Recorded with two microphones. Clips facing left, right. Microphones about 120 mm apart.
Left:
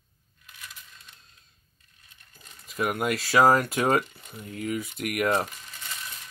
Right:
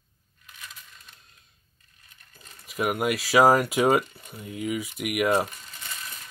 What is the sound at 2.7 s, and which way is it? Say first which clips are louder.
Speech: right 1 dB; 10° right (ahead or behind).